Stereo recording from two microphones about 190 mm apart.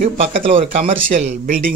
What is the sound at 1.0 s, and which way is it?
Speech, 45° right (ahead or behind).